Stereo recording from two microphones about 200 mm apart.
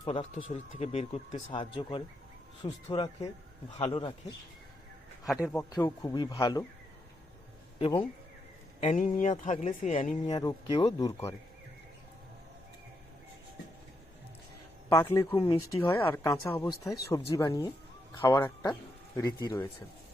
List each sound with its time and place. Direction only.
0.0 s speech: 25° left (ahead or behind)
5.5 s speech: 15° left (ahead or behind)
7.8 s speech: 25° left (ahead or behind)
10.4 s speech: 25° left (ahead or behind)
14.9 s speech: 15° left (ahead or behind)